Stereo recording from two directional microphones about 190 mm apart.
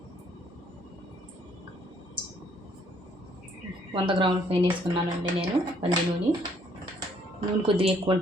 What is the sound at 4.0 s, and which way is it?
A woman's voice, 25° right (ahead or behind).